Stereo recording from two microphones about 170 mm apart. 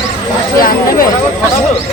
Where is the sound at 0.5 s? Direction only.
55° left (ahead or behind).